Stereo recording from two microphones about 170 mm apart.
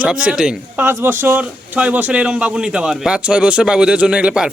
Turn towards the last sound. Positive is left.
turn(degrees=-5)  # may be behind; listen again after turning